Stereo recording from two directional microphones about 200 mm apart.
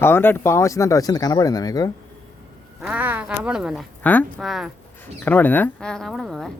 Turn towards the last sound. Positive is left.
turn(degrees=0)  # may be behind; listen again after turning